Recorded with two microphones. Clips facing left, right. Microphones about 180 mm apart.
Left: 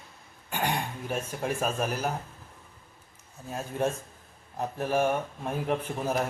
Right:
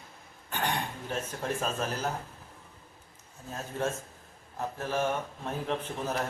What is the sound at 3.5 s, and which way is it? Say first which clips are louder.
A man's voice: left 3 dB; 15° left (ahead or behind).